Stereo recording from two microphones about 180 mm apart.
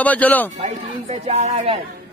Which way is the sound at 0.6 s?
40° right (ahead or behind).